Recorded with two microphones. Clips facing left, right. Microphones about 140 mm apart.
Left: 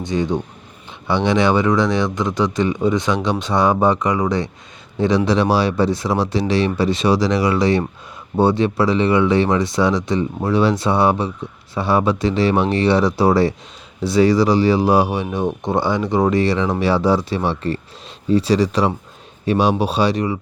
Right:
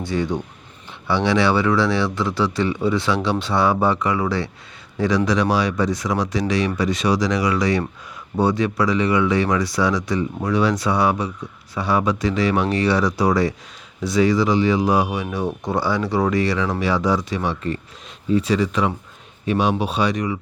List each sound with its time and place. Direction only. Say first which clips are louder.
0.0 s speech: left 2 dB; 20° left (ahead or behind)